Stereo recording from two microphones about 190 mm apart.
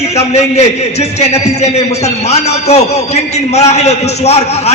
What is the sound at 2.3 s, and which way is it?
A man's voice, 35° left (ahead or behind).